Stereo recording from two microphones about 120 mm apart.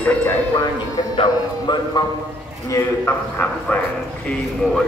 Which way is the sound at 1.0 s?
40° left (ahead or behind).